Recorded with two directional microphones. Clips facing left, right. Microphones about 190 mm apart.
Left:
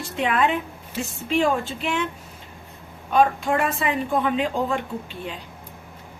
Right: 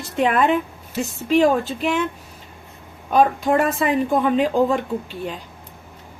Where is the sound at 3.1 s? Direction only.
40° right (ahead or behind).